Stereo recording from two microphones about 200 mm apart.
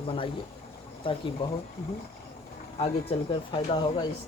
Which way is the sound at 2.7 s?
30° left (ahead or behind).